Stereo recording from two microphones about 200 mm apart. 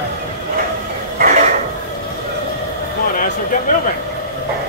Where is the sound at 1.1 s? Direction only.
45° right (ahead or behind).